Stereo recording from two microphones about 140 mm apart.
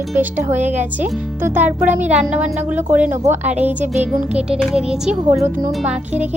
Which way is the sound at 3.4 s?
55° right (ahead or behind).